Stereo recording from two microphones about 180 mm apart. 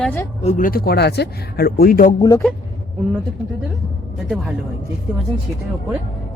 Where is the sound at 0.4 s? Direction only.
45° left (ahead or behind).